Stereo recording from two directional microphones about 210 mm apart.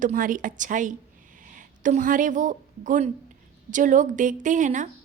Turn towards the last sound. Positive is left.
turn(degrees=-35)  # may be behind; listen again after turning